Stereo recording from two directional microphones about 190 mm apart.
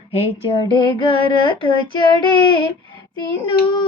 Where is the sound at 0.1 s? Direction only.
30° left (ahead or behind).